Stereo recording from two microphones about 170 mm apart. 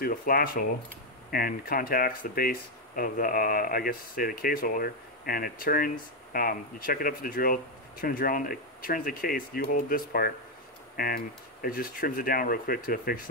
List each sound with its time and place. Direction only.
0.0 s speech: 60° left (ahead or behind)